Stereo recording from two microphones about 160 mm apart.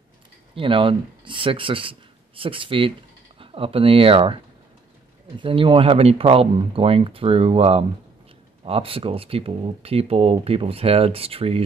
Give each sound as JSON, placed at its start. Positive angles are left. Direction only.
{"t": 0.6, "sound": "speech", "side_deg": -35}
{"t": 5.4, "sound": "speech", "side_deg": -30}